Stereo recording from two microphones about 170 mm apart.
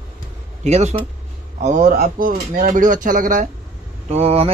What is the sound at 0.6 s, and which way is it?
Speech, 40° right (ahead or behind).